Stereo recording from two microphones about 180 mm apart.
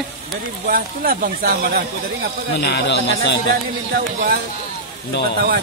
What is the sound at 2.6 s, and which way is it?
Speech, 65° left (ahead or behind).